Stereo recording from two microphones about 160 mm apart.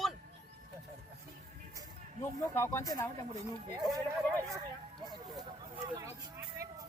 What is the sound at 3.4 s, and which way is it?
Speech, 20° right (ahead or behind).